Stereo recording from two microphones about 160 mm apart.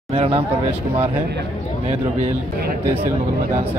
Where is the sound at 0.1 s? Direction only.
35° right (ahead or behind).